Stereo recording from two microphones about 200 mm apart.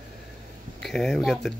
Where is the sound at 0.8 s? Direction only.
Centre (ahead or behind).